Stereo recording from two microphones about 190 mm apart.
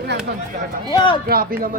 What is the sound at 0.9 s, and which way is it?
Speech, 25° left (ahead or behind).